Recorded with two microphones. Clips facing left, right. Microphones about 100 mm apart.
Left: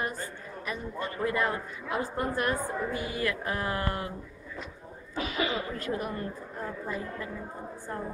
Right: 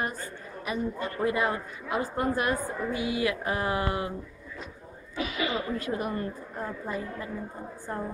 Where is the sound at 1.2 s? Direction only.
10° right (ahead or behind).